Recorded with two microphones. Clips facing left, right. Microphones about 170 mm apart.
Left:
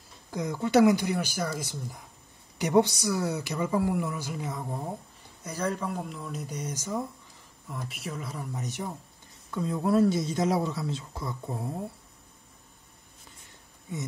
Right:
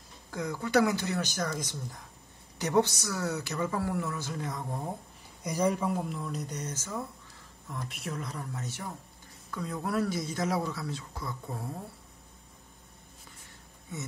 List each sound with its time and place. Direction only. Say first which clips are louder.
0.3 s speech: left 3 dB; 20° left (ahead or behind)
5.4 s speech: right 3 dB; 10° right (ahead or behind); by 7.0 s 15° left (ahead or behind)
7.7 s speech: left 1 dB; centre (ahead or behind); by 11.3 s 25° left (ahead or behind)